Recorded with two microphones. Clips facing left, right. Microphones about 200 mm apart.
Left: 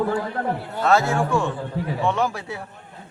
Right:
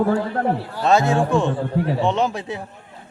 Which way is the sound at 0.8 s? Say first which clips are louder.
Right 2 dB; 20° right (ahead or behind).